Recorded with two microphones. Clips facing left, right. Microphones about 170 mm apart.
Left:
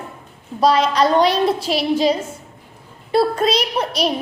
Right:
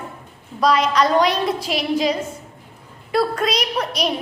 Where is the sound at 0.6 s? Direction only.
30° left (ahead or behind).